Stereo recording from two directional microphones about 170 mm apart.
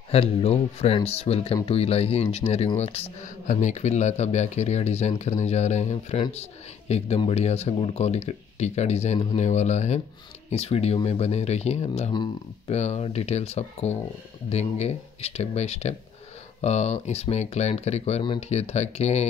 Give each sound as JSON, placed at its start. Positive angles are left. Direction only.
{"t": 0.1, "sound": "speech", "side_deg": 35}
{"t": 3.3, "sound": "speech", "side_deg": 45}